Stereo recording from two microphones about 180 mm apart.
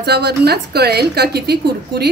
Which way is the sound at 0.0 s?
65° right (ahead or behind).